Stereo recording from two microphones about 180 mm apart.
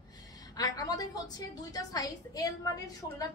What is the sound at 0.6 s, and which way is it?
A woman's voice, 20° left (ahead or behind).